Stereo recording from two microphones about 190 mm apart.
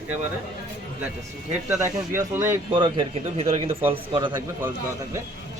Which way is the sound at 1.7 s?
15° right (ahead or behind).